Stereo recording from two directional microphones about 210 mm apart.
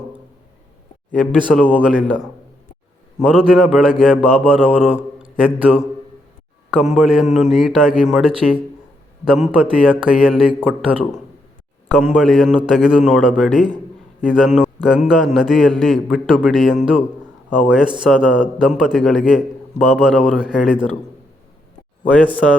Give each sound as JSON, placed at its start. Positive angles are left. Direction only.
{"t": 1.1, "sound": "a man's voice", "side_deg": 0}
{"t": 4.0, "sound": "mantra", "side_deg": -5}
{"t": 6.7, "sound": "a man's voice", "side_deg": 0}
{"t": 11.9, "sound": "a man's voice", "side_deg": 0}
{"t": 22.1, "sound": "a man's voice", "side_deg": 5}